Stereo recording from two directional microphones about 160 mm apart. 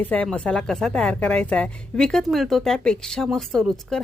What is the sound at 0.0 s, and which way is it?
Speech, 10° left (ahead or behind).